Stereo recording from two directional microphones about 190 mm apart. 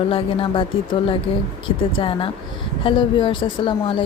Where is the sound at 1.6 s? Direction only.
30° left (ahead or behind).